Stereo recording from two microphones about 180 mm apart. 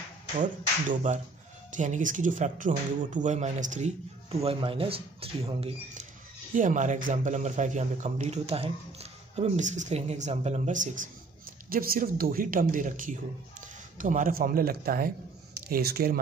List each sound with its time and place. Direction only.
0.4 s a man's voice: 45° right (ahead or behind)
6.5 s a man's voice: 45° right (ahead or behind)